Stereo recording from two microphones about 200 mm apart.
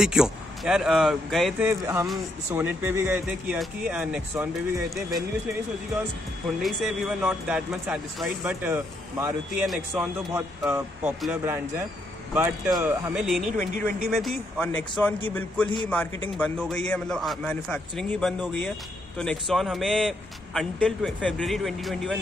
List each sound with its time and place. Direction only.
0.0 s speech: 5° right (ahead or behind)
1.7 s speech: 15° right (ahead or behind)
6.6 s speech: centre (ahead or behind)
13.6 s speech: 40° right (ahead or behind)
14.1 s a man's voice: centre (ahead or behind)